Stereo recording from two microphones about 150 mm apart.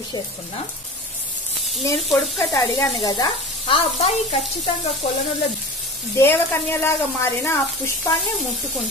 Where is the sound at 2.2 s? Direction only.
20° left (ahead or behind).